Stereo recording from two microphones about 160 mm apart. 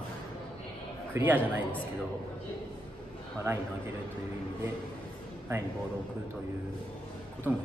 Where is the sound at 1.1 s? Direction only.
10° right (ahead or behind).